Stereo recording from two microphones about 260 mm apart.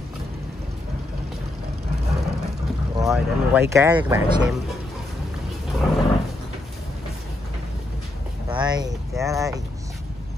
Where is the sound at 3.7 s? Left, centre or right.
Centre.